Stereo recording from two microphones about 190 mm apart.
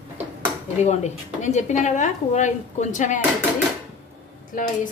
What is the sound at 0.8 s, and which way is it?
A woman's voice, 35° left (ahead or behind).